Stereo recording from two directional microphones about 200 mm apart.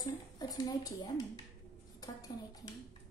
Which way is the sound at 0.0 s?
20° left (ahead or behind).